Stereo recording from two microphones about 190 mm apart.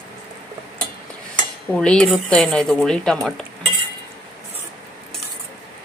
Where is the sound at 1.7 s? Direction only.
5° left (ahead or behind).